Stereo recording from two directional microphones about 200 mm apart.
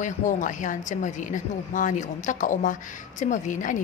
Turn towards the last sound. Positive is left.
turn(degrees=40)  # may be behind; listen again after turning